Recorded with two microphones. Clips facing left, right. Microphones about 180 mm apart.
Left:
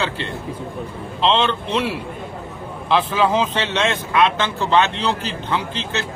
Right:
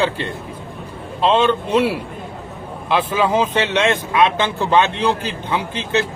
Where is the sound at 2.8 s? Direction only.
10° right (ahead or behind).